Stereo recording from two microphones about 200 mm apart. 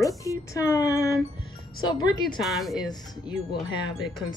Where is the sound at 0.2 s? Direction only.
15° left (ahead or behind).